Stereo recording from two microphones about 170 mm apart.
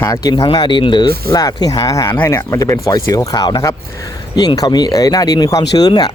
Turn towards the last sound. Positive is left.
turn(degrees=25)  # may be behind; listen again after turning